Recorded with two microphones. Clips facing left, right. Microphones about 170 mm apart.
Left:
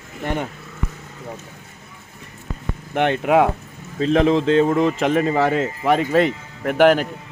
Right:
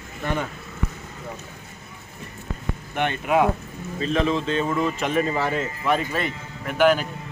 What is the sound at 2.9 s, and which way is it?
Speech, 80° left.